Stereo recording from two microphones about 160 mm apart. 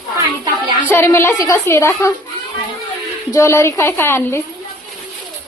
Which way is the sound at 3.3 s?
15° left (ahead or behind).